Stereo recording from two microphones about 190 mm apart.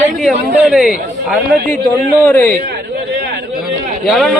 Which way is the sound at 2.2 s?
10° left (ahead or behind).